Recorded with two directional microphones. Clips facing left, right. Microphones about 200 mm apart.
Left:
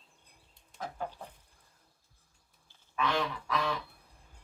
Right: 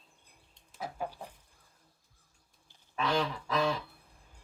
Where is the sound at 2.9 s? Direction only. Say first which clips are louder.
Right 1 dB; 30° right (ahead or behind).